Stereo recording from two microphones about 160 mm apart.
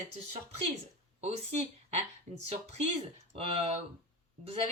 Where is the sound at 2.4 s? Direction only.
40° right (ahead or behind).